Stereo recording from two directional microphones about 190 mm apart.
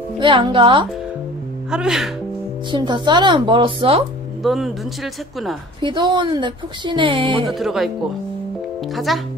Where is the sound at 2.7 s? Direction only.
25° right (ahead or behind).